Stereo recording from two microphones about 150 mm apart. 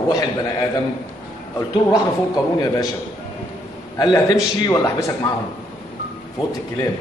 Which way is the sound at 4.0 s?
25° left (ahead or behind).